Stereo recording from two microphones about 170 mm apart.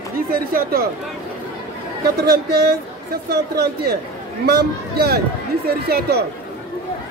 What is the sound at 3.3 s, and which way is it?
Speech, 70° right (ahead or behind).